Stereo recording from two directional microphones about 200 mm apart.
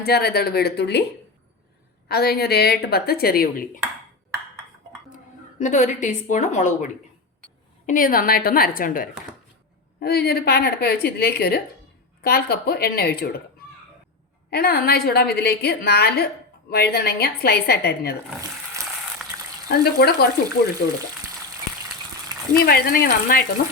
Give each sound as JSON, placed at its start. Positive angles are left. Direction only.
{"t": 0.0, "sound": "a woman's voice", "side_deg": 50}
{"t": 2.0, "sound": "a woman's voice", "side_deg": 50}
{"t": 5.5, "sound": "a woman's voice", "side_deg": 35}
{"t": 14.5, "sound": "a woman's voice", "side_deg": 50}
{"t": 18.3, "sound": "a sound", "side_deg": -15}
{"t": 19.2, "sound": "frying", "side_deg": 0}
{"t": 19.6, "sound": "a woman's voice", "side_deg": 50}
{"t": 22.6, "sound": "a woman's voice", "side_deg": 50}